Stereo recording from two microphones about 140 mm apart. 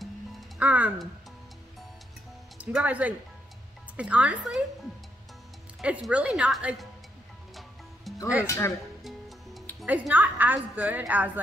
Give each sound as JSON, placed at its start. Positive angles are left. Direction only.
{"t": 0.6, "sound": "speech", "side_deg": -10}
{"t": 2.6, "sound": "a woman's voice", "side_deg": -10}
{"t": 5.8, "sound": "a woman's voice", "side_deg": -5}
{"t": 8.1, "sound": "music", "side_deg": 0}
{"t": 8.5, "sound": "speech", "side_deg": 20}
{"t": 9.8, "sound": "a woman's voice", "side_deg": -10}